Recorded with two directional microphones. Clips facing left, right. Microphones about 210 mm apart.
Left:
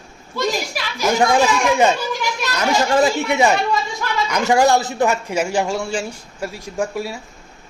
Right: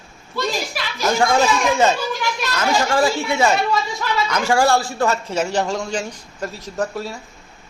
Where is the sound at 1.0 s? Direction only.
15° left (ahead or behind).